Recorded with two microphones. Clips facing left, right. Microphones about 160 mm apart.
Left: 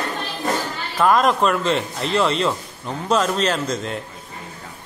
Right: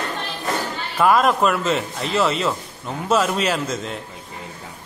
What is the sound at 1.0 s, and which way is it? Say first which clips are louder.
A man's voice: even; 5° right (ahead or behind).